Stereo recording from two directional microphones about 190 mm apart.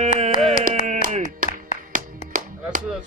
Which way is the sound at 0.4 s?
35° right (ahead or behind).